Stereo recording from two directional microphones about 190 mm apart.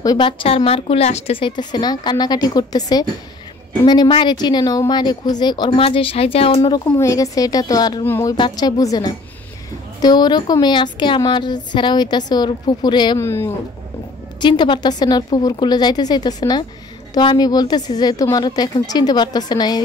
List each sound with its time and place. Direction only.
0.0 s a woman's voice: 25° left (ahead or behind)
14.4 s a woman's voice: 25° left (ahead or behind)